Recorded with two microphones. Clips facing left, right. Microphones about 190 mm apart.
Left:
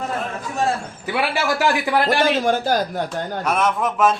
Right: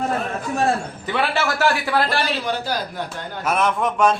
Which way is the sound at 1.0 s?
10° left (ahead or behind).